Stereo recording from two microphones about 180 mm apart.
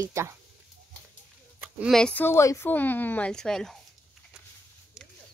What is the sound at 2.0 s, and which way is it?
A woman's voice, 5° left (ahead or behind).